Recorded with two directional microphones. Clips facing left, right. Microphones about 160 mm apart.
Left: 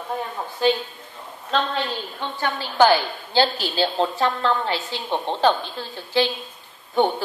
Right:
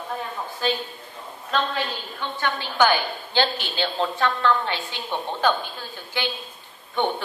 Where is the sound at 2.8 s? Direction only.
35° left (ahead or behind).